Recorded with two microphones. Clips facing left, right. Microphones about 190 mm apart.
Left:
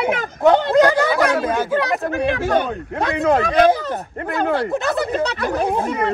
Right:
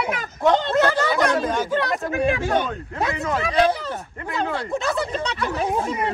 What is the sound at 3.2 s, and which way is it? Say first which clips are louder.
Speech: left 6 dB; 60° left (ahead or behind).